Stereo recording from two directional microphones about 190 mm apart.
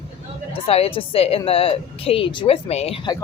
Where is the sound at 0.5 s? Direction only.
30° left (ahead or behind).